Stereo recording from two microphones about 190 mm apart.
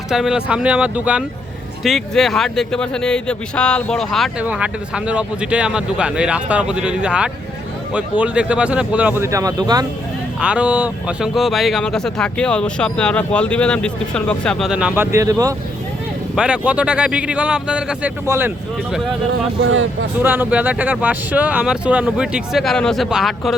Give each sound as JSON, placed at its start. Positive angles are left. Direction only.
{"t": 0.1, "sound": "a man's voice", "side_deg": -5}
{"t": 10.4, "sound": "a man's voice", "side_deg": -5}
{"t": 16.3, "sound": "a man's voice", "side_deg": -5}
{"t": 19.7, "sound": "speech", "side_deg": -90}
{"t": 20.1, "sound": "speech", "side_deg": -10}